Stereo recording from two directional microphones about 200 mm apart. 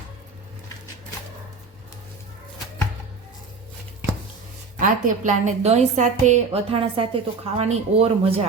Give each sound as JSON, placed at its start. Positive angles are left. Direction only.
{"t": 4.8, "sound": "a woman's voice", "side_deg": -40}